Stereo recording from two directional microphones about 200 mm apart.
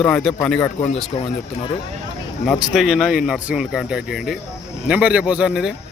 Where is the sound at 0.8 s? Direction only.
30° left (ahead or behind).